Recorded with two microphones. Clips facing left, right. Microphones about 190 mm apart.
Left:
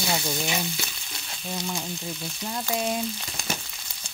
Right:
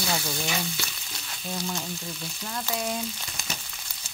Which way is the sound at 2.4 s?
20° left (ahead or behind).